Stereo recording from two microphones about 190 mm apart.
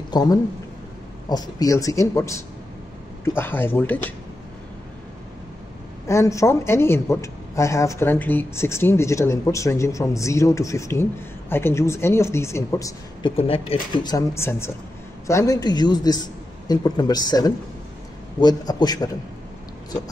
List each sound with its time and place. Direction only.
0.1 s speech: 20° left (ahead or behind)
6.0 s speech: 15° left (ahead or behind)
13.4 s a man's voice: 30° left (ahead or behind)
14.1 s a man's voice: 15° left (ahead or behind)